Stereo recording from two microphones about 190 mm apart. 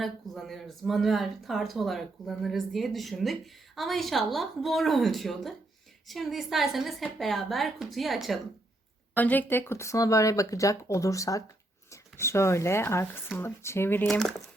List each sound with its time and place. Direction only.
0.0 s speech: centre (ahead or behind)